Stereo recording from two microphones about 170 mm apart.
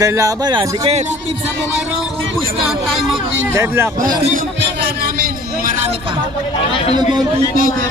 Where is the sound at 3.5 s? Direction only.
15° right (ahead or behind).